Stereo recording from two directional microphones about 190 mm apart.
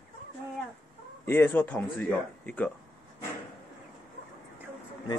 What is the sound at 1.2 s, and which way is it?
Speech, 10° left (ahead or behind).